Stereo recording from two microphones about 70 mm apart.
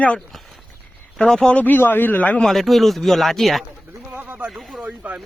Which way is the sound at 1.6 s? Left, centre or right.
Left.